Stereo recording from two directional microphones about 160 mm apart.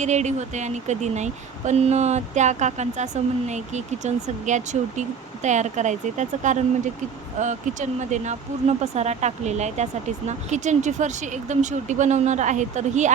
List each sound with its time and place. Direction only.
0.0 s speech: 45° right (ahead or behind)